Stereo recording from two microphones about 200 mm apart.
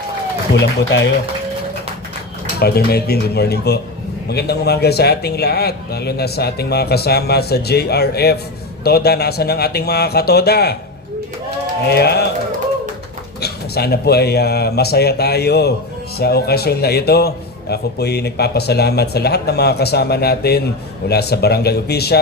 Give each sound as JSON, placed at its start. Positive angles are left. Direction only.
{"t": 0.6, "sound": "speech", "side_deg": 65}
{"t": 2.6, "sound": "a man's voice", "side_deg": 50}
{"t": 11.9, "sound": "a man's voice", "side_deg": 55}
{"t": 13.4, "sound": "a man's voice", "side_deg": 50}